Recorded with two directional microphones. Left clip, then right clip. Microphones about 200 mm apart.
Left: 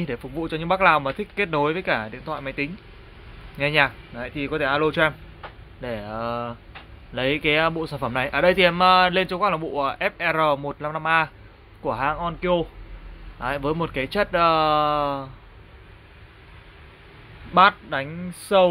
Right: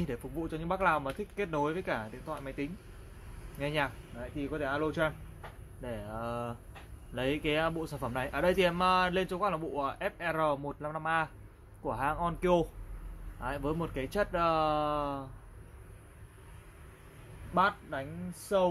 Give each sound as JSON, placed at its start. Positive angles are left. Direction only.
{"t": 0.0, "sound": "speech", "side_deg": 10}
{"t": 0.4, "sound": "speech", "side_deg": 20}
{"t": 13.4, "sound": "speech", "side_deg": 15}
{"t": 17.6, "sound": "speech", "side_deg": 25}